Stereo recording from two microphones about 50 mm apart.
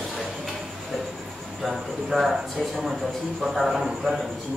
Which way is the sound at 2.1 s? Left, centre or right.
Centre.